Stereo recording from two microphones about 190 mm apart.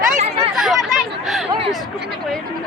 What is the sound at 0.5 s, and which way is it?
Speech, centre (ahead or behind).